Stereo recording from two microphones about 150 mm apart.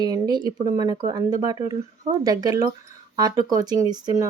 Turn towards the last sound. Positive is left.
turn(degrees=-25)  # may be behind; listen again after turning